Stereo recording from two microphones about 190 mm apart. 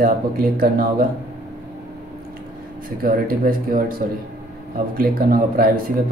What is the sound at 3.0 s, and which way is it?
Speech, 50° right (ahead or behind).